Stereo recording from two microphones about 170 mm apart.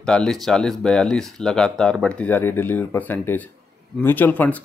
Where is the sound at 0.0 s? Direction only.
5° left (ahead or behind).